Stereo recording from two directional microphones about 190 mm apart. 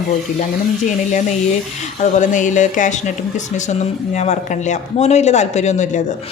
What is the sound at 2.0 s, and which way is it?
Speech, 40° left (ahead or behind).